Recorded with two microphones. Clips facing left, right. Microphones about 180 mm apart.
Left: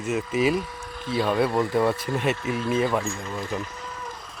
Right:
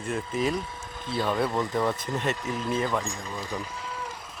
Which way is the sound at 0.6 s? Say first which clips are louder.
Left 3 dB; 25° right (ahead or behind).